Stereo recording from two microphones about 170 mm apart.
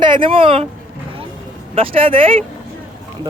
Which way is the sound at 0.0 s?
30° right (ahead or behind).